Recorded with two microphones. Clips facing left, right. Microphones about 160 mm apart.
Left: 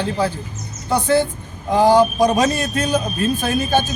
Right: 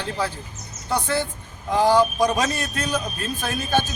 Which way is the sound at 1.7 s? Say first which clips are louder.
Left 4 dB; 25° left (ahead or behind).